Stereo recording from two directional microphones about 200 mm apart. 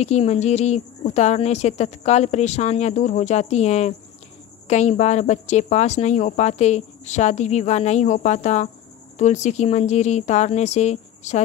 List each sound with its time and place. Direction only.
0.0 s a woman's voice: 35° left (ahead or behind)